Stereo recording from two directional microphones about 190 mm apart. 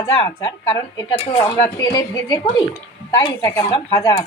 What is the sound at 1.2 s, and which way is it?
A woman's voice, 30° left (ahead or behind).